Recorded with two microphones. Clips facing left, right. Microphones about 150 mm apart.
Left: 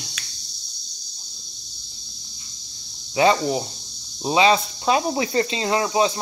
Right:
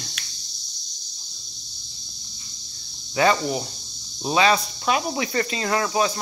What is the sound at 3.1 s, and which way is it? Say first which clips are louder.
Speech: left 2 dB; 20° left (ahead or behind).